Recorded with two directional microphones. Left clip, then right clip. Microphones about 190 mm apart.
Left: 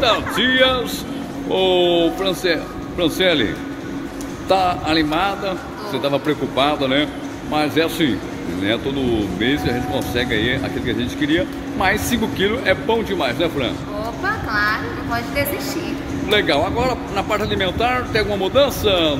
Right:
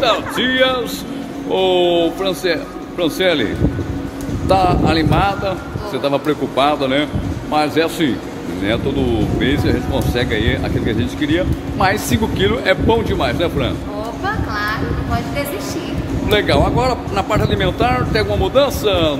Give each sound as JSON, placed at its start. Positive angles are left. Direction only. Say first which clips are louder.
{"t": 0.0, "sound": "speech", "louder": "right 1 dB", "side_deg": 0}
{"t": 4.5, "sound": "speech", "louder": "right 3 dB", "side_deg": 0}
{"t": 14.2, "sound": "a sound", "louder": "left 2 dB", "side_deg": 0}
{"t": 16.3, "sound": "speech", "louder": "right 2 dB", "side_deg": 0}